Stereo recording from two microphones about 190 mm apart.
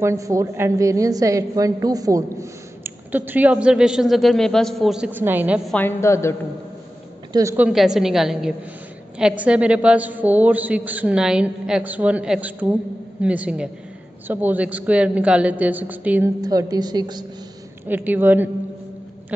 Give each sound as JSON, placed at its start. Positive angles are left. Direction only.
{"t": 0.0, "sound": "a woman's voice", "side_deg": -15}
{"t": 5.7, "sound": "a woman's voice", "side_deg": 10}
{"t": 7.3, "sound": "a woman's voice", "side_deg": -10}
{"t": 16.3, "sound": "a woman's voice", "side_deg": -20}
{"t": 17.8, "sound": "a woman's voice", "side_deg": -10}